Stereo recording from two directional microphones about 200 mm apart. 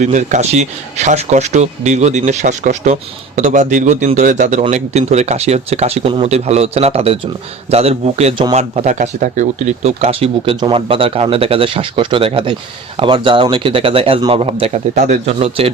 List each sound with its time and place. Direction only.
0.0 s speech: 35° right (ahead or behind)